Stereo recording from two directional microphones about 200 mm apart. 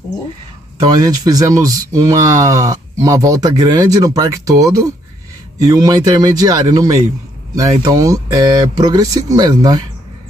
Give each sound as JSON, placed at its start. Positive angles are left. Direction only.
{"t": 0.8, "sound": "speech", "side_deg": -20}